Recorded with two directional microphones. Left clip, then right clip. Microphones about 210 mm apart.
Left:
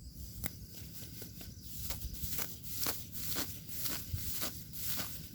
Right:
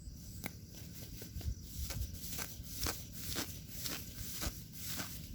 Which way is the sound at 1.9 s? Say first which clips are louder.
Left 2 dB; 15° left (ahead or behind).